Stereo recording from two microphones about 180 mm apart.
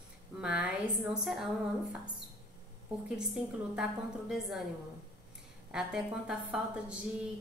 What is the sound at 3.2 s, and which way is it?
A woman's voice, 5° right (ahead or behind).